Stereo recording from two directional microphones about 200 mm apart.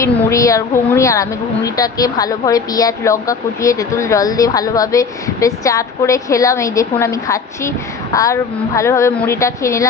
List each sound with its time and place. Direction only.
0.0 s a woman's voice: 15° left (ahead or behind)